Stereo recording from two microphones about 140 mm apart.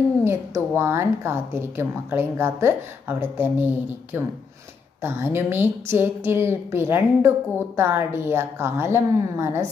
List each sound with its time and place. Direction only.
0.2 s a woman's voice: 20° right (ahead or behind)